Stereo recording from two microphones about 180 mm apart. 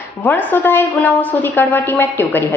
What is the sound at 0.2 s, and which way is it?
A woman's voice, 10° left (ahead or behind).